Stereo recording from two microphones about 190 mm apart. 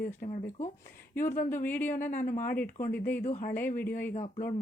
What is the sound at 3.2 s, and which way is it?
Speech, 40° left (ahead or behind).